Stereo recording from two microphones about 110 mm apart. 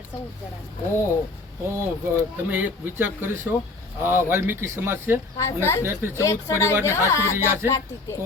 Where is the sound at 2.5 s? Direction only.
20° right (ahead or behind).